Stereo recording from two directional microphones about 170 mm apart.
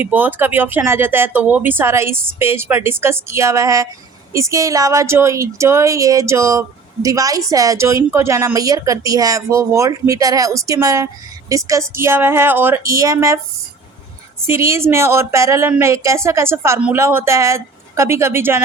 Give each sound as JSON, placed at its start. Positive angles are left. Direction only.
{"t": 0.0, "sound": "speech", "side_deg": -10}
{"t": 14.4, "sound": "speech", "side_deg": -15}